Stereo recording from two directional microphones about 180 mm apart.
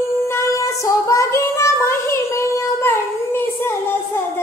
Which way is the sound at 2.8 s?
15° left (ahead or behind).